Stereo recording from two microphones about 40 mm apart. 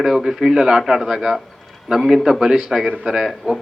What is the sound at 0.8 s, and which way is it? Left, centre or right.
A man's voice, centre.